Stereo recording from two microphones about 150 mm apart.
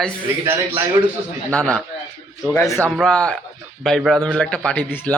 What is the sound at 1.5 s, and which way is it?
A man's voice, 10° left (ahead or behind).